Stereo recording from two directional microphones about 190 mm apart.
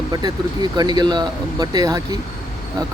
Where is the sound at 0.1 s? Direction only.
20° right (ahead or behind).